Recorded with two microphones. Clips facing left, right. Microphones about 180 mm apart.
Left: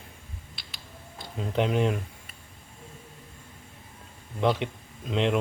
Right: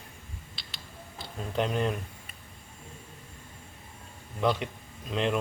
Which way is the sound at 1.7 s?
10° left (ahead or behind).